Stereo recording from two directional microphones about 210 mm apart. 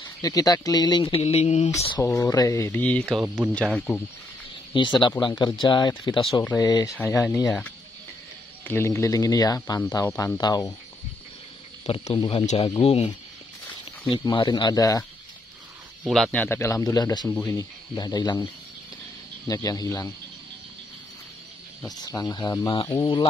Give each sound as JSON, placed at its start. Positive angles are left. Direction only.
{"t": 0.2, "sound": "speech", "side_deg": 15}
{"t": 2.0, "sound": "speech", "side_deg": 15}
{"t": 4.7, "sound": "speech", "side_deg": 20}
{"t": 8.6, "sound": "speech", "side_deg": 10}
{"t": 11.8, "sound": "speech", "side_deg": 25}
{"t": 14.1, "sound": "speech", "side_deg": 20}
{"t": 16.0, "sound": "speech", "side_deg": 0}
{"t": 21.8, "sound": "speech", "side_deg": 20}